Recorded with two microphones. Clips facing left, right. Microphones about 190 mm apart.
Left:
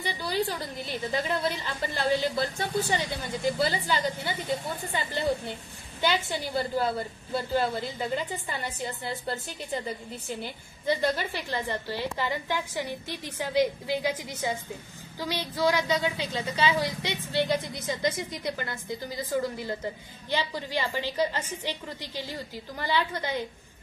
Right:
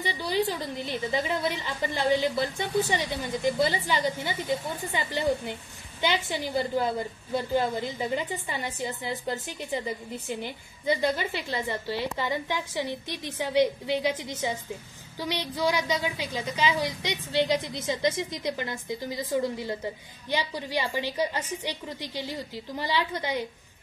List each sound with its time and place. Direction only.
0.0 s a woman's voice: 20° right (ahead or behind)